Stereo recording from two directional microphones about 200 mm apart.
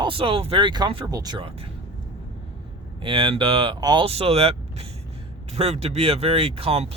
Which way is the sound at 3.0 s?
25° right (ahead or behind).